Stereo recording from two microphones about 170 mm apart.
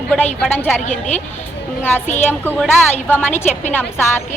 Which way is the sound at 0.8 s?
45° left (ahead or behind).